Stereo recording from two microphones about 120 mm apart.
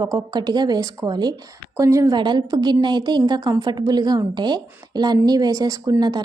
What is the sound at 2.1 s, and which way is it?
A woman's voice, 40° right (ahead or behind).